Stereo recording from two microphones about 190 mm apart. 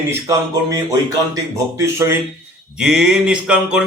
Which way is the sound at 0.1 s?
15° right (ahead or behind).